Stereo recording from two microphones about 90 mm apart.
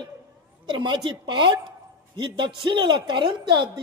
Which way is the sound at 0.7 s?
60° right (ahead or behind).